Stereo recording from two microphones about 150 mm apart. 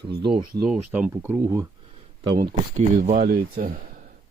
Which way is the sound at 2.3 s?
70° right (ahead or behind).